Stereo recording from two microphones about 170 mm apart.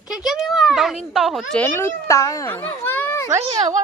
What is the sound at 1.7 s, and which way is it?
A child's voice, 15° left (ahead or behind).